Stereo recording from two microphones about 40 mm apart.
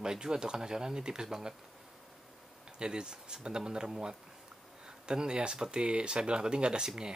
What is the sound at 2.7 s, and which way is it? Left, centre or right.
Speech, right.